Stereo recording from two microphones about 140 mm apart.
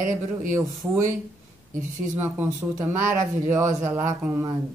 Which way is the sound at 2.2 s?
15° right (ahead or behind).